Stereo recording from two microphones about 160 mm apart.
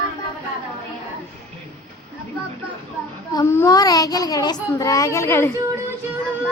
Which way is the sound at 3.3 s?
20° left (ahead or behind).